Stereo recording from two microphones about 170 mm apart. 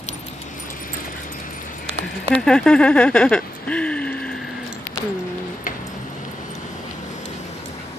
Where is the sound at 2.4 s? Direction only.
5° left (ahead or behind).